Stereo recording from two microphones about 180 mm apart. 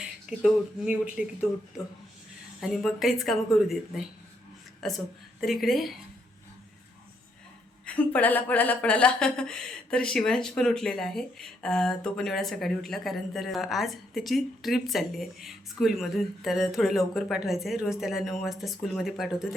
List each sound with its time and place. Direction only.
0.0 s speech: 5° right (ahead or behind)
2.6 s speech: centre (ahead or behind)
7.9 s speech: 10° left (ahead or behind)